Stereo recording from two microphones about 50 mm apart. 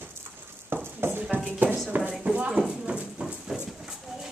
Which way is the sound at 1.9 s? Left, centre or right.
Right.